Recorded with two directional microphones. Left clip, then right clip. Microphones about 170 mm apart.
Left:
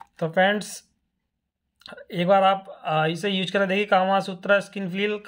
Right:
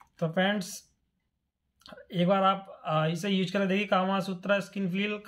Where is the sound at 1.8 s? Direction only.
35° left (ahead or behind).